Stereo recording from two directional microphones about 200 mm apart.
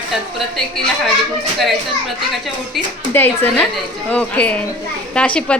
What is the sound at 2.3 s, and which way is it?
A woman's voice, centre (ahead or behind).